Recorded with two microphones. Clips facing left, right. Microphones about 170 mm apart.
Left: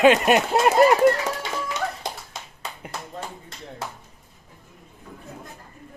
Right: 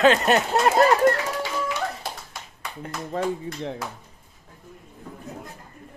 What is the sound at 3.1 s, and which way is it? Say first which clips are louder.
Speech: right 11 dB; 90° right.